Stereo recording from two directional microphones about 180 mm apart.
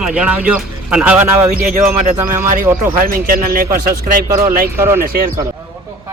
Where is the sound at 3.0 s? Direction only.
55° right (ahead or behind).